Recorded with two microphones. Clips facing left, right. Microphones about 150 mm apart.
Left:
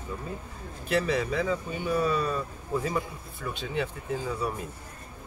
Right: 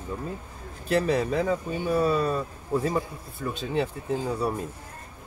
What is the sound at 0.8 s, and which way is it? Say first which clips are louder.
Speech: right 3 dB; 35° right (ahead or behind).